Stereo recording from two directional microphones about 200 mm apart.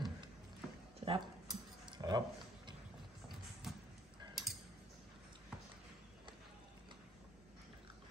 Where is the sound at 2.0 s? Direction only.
20° right (ahead or behind).